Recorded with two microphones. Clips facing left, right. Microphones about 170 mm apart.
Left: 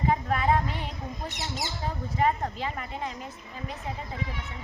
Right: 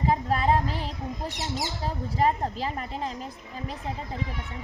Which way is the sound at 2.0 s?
35° right (ahead or behind).